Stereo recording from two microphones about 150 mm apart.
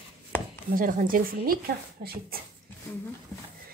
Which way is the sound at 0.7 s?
65° right (ahead or behind).